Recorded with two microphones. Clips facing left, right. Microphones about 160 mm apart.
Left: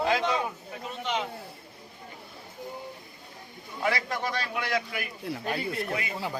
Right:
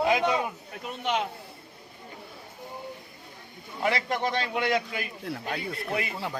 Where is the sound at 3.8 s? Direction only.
25° right (ahead or behind).